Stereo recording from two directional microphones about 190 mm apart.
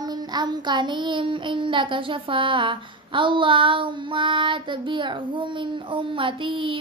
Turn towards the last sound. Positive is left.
turn(degrees=-25)  # may be behind; listen again after turning